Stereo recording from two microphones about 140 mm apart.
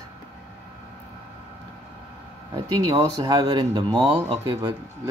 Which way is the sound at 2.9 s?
35° right (ahead or behind).